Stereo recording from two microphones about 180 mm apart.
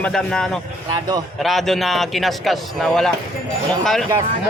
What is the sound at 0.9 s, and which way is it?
Speech, 20° right (ahead or behind).